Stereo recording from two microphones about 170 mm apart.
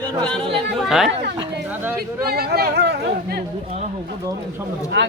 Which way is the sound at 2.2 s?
65° right (ahead or behind).